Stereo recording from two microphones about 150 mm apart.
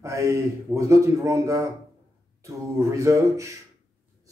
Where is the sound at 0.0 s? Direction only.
20° right (ahead or behind).